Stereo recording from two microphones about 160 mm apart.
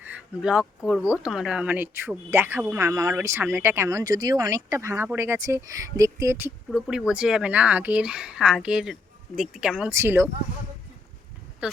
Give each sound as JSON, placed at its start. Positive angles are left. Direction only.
{"t": 0.0, "sound": "speech", "side_deg": -5}
{"t": 6.7, "sound": "speech", "side_deg": 0}
{"t": 9.9, "sound": "speech", "side_deg": -15}
{"t": 11.6, "sound": "speech", "side_deg": -5}